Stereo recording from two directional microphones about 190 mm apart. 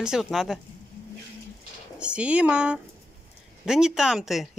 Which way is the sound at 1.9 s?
5° right (ahead or behind).